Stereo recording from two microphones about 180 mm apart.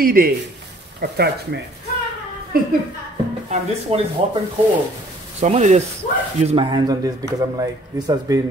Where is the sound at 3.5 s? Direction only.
35° right (ahead or behind).